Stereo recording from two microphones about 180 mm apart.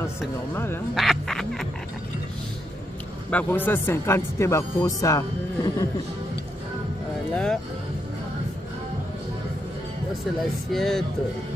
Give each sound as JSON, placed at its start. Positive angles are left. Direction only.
{"t": 0.9, "sound": "a sound", "side_deg": 0}
{"t": 3.3, "sound": "speech", "side_deg": 10}
{"t": 10.4, "sound": "speech", "side_deg": 0}